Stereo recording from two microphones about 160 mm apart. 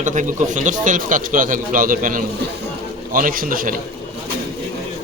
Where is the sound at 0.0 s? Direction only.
50° right (ahead or behind).